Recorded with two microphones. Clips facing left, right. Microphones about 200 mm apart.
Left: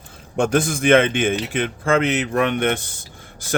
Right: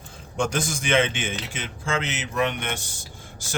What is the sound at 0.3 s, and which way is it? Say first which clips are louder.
Speech: left 7 dB; 60° left (ahead or behind).